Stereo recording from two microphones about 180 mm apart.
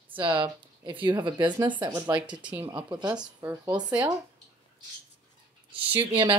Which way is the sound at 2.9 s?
25° right (ahead or behind).